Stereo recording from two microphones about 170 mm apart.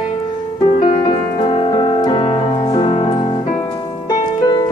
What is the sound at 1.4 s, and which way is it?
Music, 30° left (ahead or behind).